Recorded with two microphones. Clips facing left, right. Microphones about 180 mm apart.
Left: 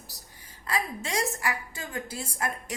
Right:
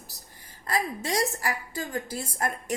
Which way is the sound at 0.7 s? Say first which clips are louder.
Right 3 dB; 40° right (ahead or behind).